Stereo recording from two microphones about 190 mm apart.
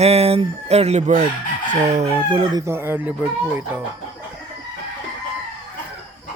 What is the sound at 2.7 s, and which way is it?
Speech, 10° right (ahead or behind).